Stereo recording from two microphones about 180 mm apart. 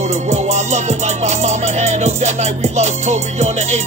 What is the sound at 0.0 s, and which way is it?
Music, 40° right (ahead or behind).